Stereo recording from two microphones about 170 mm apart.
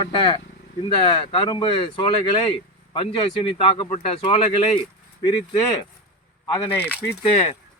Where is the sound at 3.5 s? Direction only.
35° left (ahead or behind).